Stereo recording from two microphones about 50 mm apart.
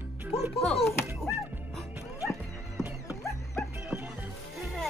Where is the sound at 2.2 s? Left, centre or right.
Left.